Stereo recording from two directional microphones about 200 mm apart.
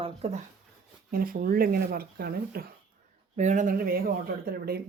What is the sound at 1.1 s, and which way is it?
Speech, 45° right (ahead or behind).